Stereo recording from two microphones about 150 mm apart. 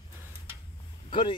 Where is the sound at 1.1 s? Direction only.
35° left (ahead or behind).